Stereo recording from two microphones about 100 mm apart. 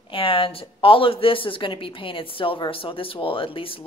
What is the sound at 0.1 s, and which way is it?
Speech, 65° left (ahead or behind).